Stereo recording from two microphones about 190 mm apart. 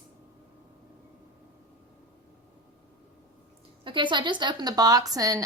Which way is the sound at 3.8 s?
25° right (ahead or behind).